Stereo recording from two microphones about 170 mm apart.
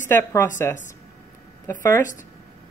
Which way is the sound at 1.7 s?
15° left (ahead or behind).